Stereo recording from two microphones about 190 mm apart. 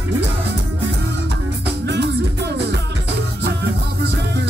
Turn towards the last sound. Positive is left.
turn(degrees=-60)  # may be behind; listen again after turning